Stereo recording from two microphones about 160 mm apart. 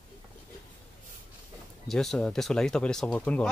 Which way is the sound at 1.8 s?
Centre (ahead or behind).